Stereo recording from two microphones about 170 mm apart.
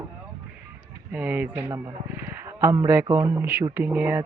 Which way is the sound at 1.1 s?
10° right (ahead or behind).